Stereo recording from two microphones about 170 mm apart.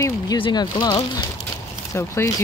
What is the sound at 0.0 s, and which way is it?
Speech, 25° left (ahead or behind).